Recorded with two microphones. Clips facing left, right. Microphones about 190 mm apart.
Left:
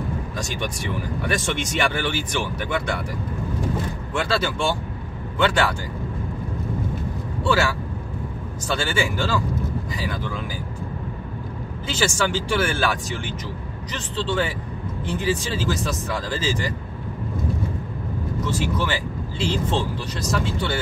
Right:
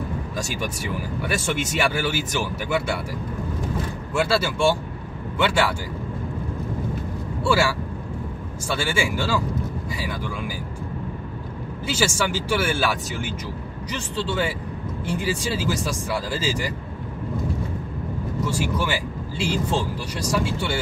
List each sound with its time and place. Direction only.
0.4 s speech: 5° right (ahead or behind)
4.1 s speech: 10° right (ahead or behind)
8.6 s speech: 10° right (ahead or behind)
11.9 s speech: 10° right (ahead or behind)
18.4 s speech: 10° right (ahead or behind)